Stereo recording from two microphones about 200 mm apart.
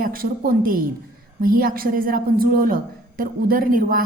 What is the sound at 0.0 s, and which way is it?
A woman's voice, 45° right (ahead or behind).